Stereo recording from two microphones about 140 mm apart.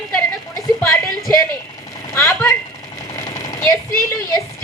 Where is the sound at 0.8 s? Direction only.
20° left (ahead or behind).